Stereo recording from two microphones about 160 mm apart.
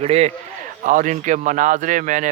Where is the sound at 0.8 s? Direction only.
55° right (ahead or behind).